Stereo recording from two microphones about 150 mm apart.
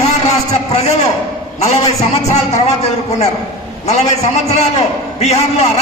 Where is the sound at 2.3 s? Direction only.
45° left (ahead or behind).